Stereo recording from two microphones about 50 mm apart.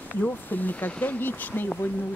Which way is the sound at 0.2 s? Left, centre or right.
Left.